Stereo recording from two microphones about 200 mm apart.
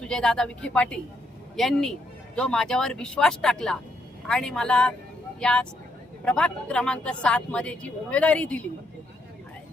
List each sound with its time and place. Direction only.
0.0 s speech: 5° left (ahead or behind)